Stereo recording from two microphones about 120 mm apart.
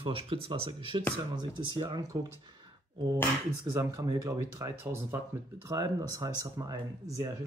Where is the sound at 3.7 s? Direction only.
25° right (ahead or behind).